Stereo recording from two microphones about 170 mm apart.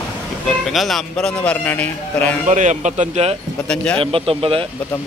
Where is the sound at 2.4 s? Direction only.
45° right (ahead or behind).